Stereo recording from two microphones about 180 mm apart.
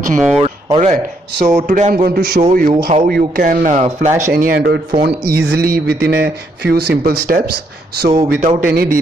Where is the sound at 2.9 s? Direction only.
40° right (ahead or behind).